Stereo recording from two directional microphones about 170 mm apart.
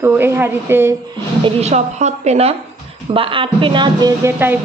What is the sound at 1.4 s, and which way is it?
Speech, 40° right (ahead or behind).